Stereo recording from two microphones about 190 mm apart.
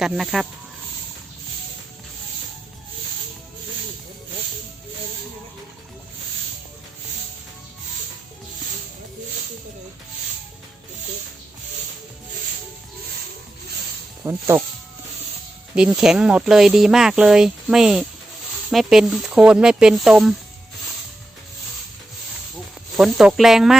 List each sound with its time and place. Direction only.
0.0 s speech: centre (ahead or behind)
14.3 s speech: 15° right (ahead or behind)
15.7 s speech: 5° right (ahead or behind)
23.0 s speech: centre (ahead or behind)